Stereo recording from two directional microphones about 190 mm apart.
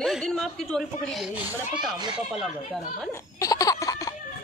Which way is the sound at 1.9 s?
25° right (ahead or behind).